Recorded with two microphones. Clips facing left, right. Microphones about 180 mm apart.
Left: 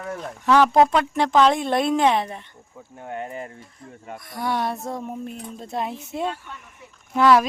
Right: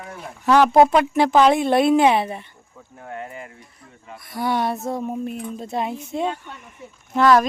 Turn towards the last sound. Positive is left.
turn(degrees=5)  # may be behind; listen again after turning